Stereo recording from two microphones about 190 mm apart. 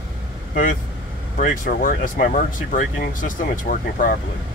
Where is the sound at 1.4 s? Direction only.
45° left (ahead or behind).